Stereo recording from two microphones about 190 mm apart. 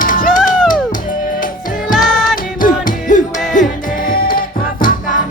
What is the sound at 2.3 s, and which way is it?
Music, 45° left (ahead or behind).